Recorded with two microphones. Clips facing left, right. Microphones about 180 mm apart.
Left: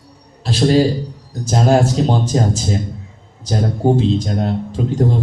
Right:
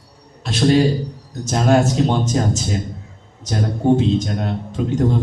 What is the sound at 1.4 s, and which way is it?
Speech, 30° left (ahead or behind).